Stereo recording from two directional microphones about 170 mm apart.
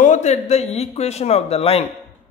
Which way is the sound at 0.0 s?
45° left (ahead or behind).